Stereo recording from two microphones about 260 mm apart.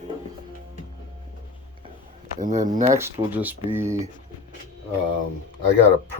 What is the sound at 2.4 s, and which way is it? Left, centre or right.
Speech, right.